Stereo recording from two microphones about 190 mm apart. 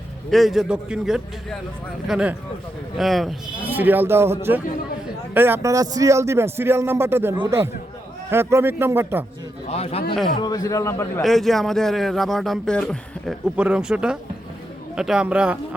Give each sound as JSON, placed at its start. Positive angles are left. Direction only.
{"t": 0.3, "sound": "speech", "side_deg": 0}
{"t": 3.4, "sound": "a man's voice", "side_deg": -25}
{"t": 3.8, "sound": "speech", "side_deg": -10}
{"t": 9.6, "sound": "a man's voice", "side_deg": 30}
{"t": 10.4, "sound": "a man's voice", "side_deg": 20}
{"t": 11.2, "sound": "speech", "side_deg": 0}